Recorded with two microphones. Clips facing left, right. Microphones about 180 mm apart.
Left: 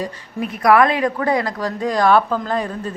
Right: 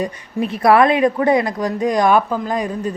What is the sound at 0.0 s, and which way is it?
Speech, 25° right (ahead or behind).